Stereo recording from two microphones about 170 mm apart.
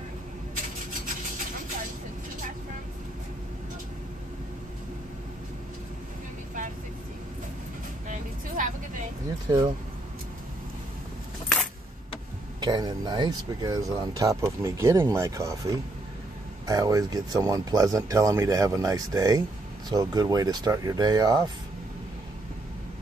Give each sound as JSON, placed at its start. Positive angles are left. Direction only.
{"t": 8.1, "sound": "vehicle", "side_deg": -50}
{"t": 9.5, "sound": "speech", "side_deg": -20}
{"t": 12.5, "sound": "speech", "side_deg": -25}